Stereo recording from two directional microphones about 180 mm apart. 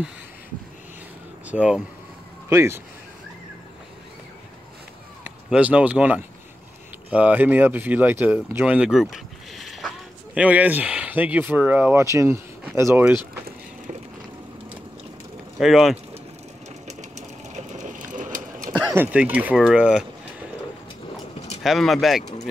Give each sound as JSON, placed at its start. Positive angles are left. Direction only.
{"t": 1.5, "sound": "speech", "side_deg": -5}
{"t": 5.2, "sound": "speech", "side_deg": -5}
{"t": 15.6, "sound": "speech", "side_deg": 0}
{"t": 17.6, "sound": "a sound", "side_deg": -40}
{"t": 18.9, "sound": "speech", "side_deg": -10}
{"t": 21.6, "sound": "speech", "side_deg": 0}